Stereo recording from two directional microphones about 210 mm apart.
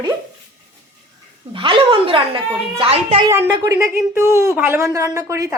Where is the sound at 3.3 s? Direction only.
10° right (ahead or behind).